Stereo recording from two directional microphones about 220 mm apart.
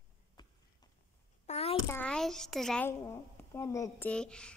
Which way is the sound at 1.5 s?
25° left (ahead or behind).